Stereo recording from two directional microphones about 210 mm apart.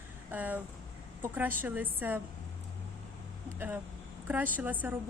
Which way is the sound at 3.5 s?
10° right (ahead or behind).